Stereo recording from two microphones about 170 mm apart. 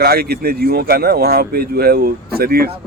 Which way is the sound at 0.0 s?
65° right (ahead or behind).